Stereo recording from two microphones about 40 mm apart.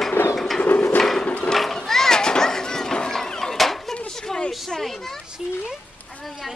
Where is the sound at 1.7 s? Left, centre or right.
Centre.